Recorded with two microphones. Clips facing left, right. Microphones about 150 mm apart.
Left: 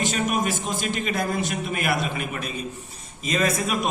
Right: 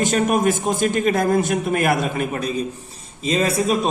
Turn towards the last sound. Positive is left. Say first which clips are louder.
# right 5 dB
turn(degrees=-30)  # may be behind; listen again after turning